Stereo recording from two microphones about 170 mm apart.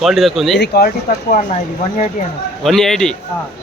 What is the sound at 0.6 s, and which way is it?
Speech, 65° left (ahead or behind).